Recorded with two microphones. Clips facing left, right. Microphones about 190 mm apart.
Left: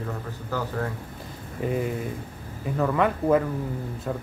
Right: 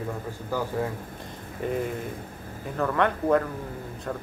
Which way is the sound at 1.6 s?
Centre (ahead or behind).